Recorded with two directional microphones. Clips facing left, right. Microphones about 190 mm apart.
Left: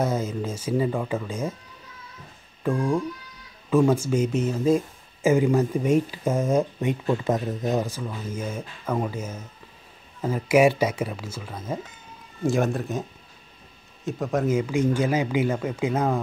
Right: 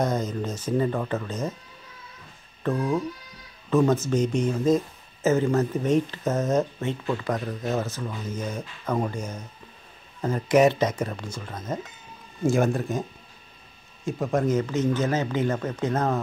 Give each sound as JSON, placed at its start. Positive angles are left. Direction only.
{"t": 0.0, "sound": "speech", "side_deg": 5}
{"t": 2.6, "sound": "speech", "side_deg": 10}
{"t": 14.0, "sound": "speech", "side_deg": 0}